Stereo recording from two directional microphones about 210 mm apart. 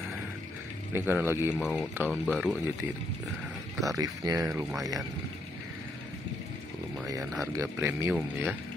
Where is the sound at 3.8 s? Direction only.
15° right (ahead or behind).